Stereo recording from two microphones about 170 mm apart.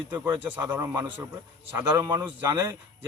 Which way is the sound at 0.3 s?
15° right (ahead or behind).